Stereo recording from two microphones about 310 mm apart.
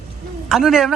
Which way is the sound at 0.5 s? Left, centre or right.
Centre.